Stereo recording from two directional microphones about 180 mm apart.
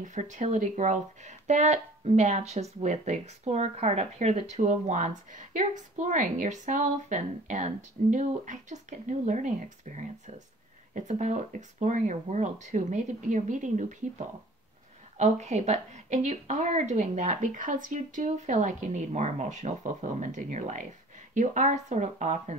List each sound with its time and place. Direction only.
0.0 s speech: 45° right (ahead or behind)